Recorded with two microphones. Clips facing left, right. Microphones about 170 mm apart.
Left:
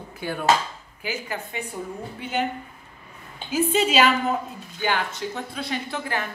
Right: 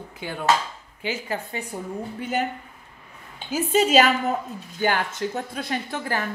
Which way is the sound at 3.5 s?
45° right (ahead or behind).